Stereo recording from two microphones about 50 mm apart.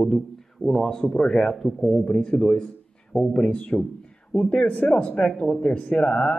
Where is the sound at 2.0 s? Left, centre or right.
Centre.